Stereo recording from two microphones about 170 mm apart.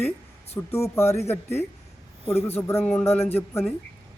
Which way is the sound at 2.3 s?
10° left (ahead or behind).